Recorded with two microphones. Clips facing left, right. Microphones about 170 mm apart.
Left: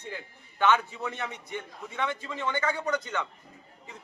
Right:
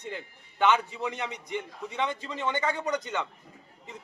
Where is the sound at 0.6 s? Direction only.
15° right (ahead or behind).